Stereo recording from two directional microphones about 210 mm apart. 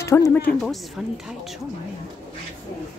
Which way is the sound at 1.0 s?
Centre (ahead or behind).